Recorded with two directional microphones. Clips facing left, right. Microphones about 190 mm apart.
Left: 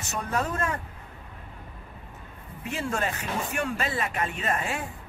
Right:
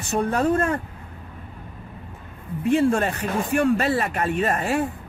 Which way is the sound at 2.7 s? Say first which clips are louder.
Right 10 dB; 35° right (ahead or behind).